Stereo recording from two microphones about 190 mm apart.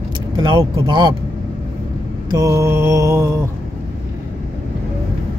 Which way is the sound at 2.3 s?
15° right (ahead or behind).